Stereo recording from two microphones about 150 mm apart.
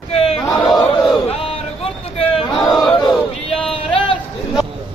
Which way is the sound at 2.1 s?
40° left (ahead or behind).